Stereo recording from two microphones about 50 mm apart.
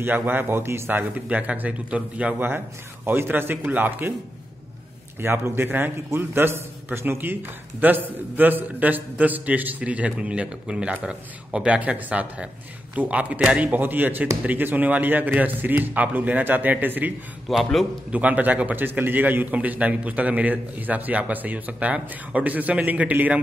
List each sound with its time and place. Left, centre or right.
0.0 s a man's voice: right
0.8 s a man's voice: right
1.3 s a man's voice: right
2.3 s a man's voice: right
5.2 s a man's voice: right
7.8 s a man's voice: right
13.7 s a man's voice: right
17.5 s a man's voice: centre
18.1 s a man's voice: right